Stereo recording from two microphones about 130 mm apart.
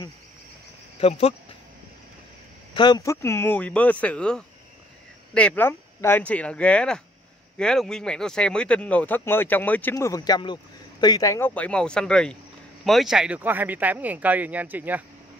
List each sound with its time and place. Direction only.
0.9 s speech: 50° left (ahead or behind)
2.7 s speech: 35° left (ahead or behind)
3.0 s speech: 20° left (ahead or behind)
9.9 s speech: 25° left (ahead or behind); by 15.0 s 15° right (ahead or behind)